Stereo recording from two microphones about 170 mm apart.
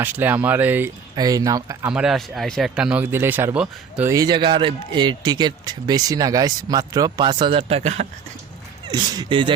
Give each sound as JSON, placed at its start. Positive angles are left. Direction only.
{"t": 0.0, "sound": "speech", "side_deg": -10}
{"t": 1.1, "sound": "a man's voice", "side_deg": -20}
{"t": 1.9, "sound": "speech", "side_deg": -5}
{"t": 4.1, "sound": "a man's voice", "side_deg": -25}
{"t": 8.9, "sound": "a man's voice", "side_deg": -25}